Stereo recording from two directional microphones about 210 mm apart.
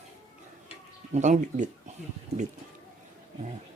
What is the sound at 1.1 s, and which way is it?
Speech, 35° right (ahead or behind).